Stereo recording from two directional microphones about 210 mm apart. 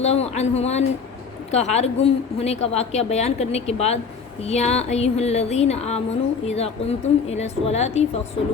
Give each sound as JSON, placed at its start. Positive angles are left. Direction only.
{"t": 0.0, "sound": "a woman's voice", "side_deg": 30}